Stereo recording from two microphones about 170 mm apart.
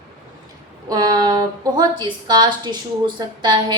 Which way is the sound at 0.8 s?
25° right (ahead or behind).